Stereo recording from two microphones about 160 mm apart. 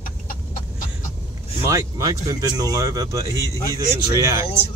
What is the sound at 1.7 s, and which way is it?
Speech, 20° right (ahead or behind).